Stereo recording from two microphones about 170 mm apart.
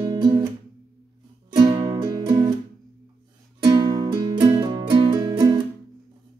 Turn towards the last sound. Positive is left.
turn(degrees=-20)  # may be behind; listen again after turning